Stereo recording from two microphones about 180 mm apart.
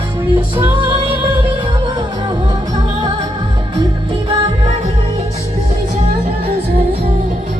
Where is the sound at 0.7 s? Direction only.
30° right (ahead or behind).